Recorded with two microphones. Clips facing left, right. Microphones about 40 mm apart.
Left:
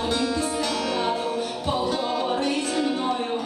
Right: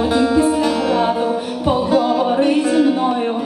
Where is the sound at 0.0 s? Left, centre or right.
Centre.